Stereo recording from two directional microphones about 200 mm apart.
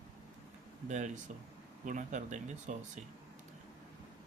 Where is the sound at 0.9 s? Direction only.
40° right (ahead or behind).